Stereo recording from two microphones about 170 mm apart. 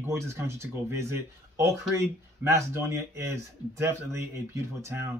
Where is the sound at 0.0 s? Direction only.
15° right (ahead or behind).